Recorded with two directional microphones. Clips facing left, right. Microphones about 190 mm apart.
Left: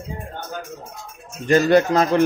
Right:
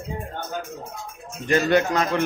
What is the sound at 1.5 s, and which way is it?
Speech, 35° left (ahead or behind).